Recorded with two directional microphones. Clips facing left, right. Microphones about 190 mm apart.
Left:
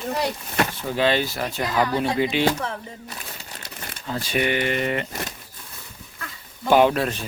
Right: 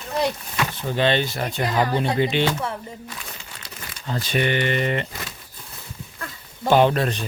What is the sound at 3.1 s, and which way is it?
Crumpling, 45° left (ahead or behind).